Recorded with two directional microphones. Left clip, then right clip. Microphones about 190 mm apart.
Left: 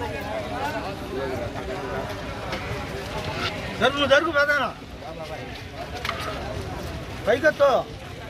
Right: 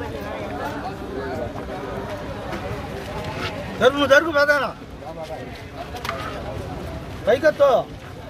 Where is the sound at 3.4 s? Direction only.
60° right (ahead or behind).